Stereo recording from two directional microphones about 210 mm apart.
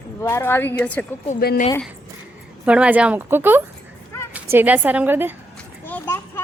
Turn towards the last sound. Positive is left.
turn(degrees=10)  # may be behind; listen again after turning